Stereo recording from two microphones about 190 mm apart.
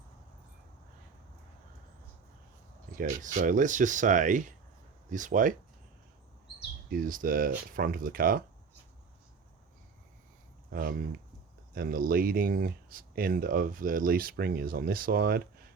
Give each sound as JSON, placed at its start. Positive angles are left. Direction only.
{"t": 2.9, "sound": "speech", "side_deg": -45}
{"t": 6.9, "sound": "speech", "side_deg": -45}
{"t": 10.7, "sound": "speech", "side_deg": -50}